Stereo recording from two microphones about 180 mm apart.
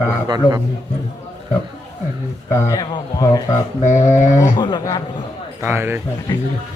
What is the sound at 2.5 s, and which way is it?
Speech, 15° left (ahead or behind).